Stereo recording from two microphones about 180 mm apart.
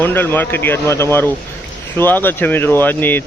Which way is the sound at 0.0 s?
10° left (ahead or behind).